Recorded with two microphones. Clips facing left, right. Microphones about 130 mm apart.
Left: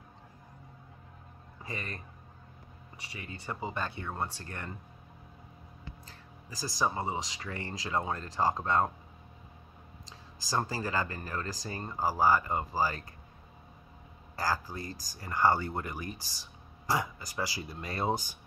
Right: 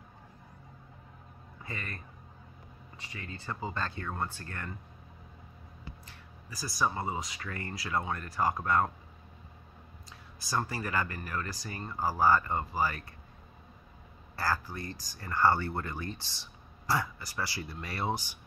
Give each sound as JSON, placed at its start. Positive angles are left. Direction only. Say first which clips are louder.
{"t": 1.7, "sound": "speech", "louder": "left 1 dB", "side_deg": 20}
{"t": 3.2, "sound": "speech", "louder": "even", "side_deg": 20}
{"t": 6.6, "sound": "speech", "louder": "even", "side_deg": 20}
{"t": 10.5, "sound": "speech", "louder": "left 1 dB", "side_deg": 30}
{"t": 11.9, "sound": "speech", "louder": "even", "side_deg": 15}
{"t": 14.3, "sound": "speech", "louder": "even", "side_deg": 15}